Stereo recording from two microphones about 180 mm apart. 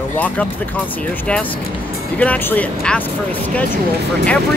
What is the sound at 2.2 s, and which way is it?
Speech, 10° left (ahead or behind).